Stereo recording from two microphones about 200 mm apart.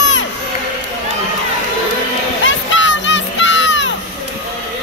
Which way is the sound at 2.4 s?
70° left (ahead or behind).